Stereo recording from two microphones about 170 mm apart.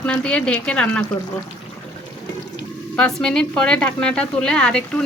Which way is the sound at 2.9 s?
5° left (ahead or behind).